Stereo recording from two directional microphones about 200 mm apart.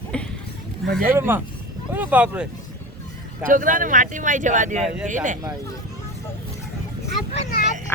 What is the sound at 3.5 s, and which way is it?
Speech, 40° right (ahead or behind).